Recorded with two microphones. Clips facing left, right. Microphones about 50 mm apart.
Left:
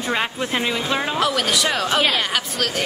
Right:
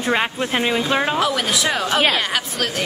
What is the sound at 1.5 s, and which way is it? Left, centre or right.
Speech, centre.